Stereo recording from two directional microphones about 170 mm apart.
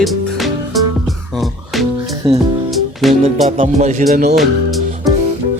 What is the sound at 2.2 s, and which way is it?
Music, 30° right (ahead or behind).